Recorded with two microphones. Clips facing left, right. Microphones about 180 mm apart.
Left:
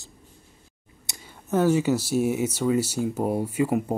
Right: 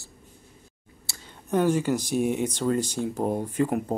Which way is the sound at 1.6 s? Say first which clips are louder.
Left 2 dB; 10° left (ahead or behind).